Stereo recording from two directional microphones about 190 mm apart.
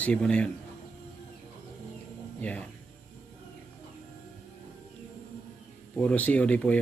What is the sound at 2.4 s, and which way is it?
Speech, 5° left (ahead or behind).